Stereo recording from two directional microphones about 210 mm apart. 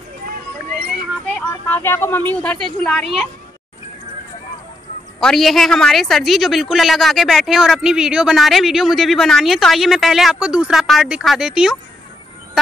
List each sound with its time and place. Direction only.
0.7 s music: 45° right (ahead or behind)
1.2 s speech: 10° left (ahead or behind)
5.2 s speech: centre (ahead or behind)